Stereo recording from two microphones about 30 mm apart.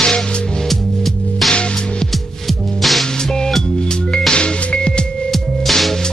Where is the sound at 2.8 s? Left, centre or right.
Centre.